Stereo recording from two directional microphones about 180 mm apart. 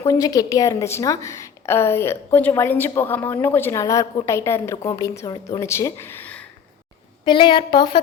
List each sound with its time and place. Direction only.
0.0 s a woman's voice: 20° left (ahead or behind)
7.3 s a woman's voice: 30° left (ahead or behind)